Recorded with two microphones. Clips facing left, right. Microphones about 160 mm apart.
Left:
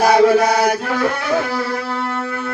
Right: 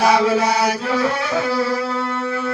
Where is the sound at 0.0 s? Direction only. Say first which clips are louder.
Left 4 dB; 50° left (ahead or behind).